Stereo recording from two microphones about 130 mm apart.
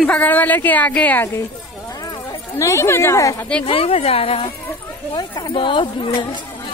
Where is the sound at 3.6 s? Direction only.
45° left (ahead or behind).